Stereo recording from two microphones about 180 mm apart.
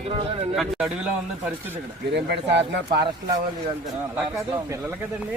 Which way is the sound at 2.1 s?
70° right (ahead or behind).